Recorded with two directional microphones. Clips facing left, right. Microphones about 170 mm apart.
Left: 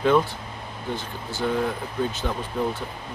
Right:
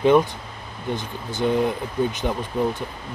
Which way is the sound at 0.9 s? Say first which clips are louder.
Right 3 dB; 20° right (ahead or behind).